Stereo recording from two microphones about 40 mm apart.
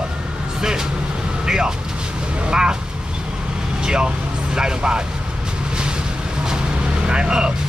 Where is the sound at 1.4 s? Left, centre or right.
Centre.